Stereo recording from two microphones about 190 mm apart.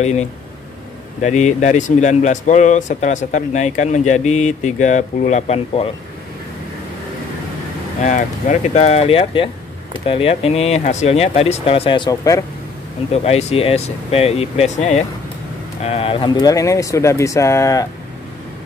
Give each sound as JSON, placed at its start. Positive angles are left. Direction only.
{"t": 0.0, "sound": "speech", "side_deg": 35}
{"t": 8.0, "sound": "speech", "side_deg": 40}
{"t": 13.1, "sound": "speech", "side_deg": 35}